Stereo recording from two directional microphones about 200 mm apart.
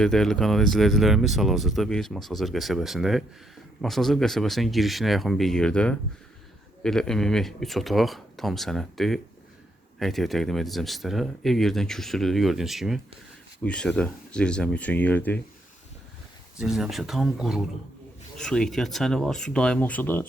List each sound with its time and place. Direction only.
0.0 s speech: centre (ahead or behind)
16.6 s speech: 5° right (ahead or behind)